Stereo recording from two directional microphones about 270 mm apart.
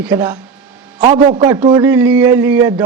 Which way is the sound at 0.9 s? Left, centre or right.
Right.